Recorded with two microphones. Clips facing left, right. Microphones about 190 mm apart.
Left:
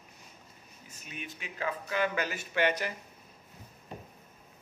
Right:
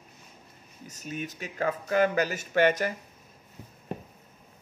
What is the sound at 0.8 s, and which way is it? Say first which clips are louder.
A man's voice: right 9 dB; 40° right (ahead or behind).